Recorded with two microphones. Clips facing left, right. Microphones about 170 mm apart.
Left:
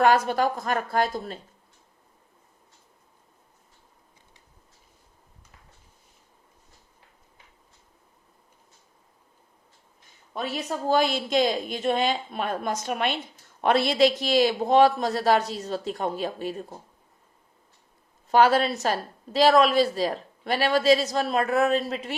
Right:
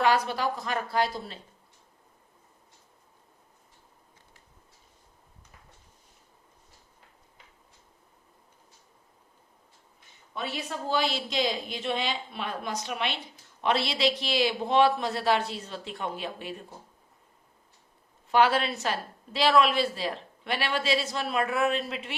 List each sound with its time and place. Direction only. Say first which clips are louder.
0.0 s speech: left 5 dB; 50° left (ahead or behind)
10.3 s speech: left 4 dB; 45° left (ahead or behind)
18.3 s a woman's voice: left 4 dB; 40° left (ahead or behind)